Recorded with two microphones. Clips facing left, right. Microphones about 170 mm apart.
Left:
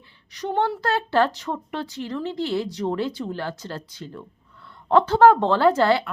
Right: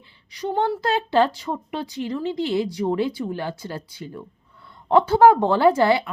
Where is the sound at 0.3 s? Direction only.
10° right (ahead or behind).